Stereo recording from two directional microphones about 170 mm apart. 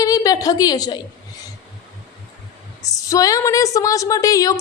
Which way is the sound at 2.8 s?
20° left (ahead or behind).